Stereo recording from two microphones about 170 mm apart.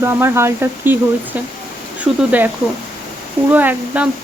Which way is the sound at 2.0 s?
10° right (ahead or behind).